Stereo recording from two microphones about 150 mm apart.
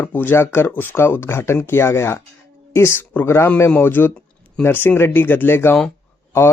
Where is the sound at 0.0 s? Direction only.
15° left (ahead or behind).